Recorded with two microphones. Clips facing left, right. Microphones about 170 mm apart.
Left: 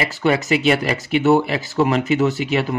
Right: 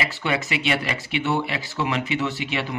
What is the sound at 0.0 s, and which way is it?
Speech, 40° left (ahead or behind).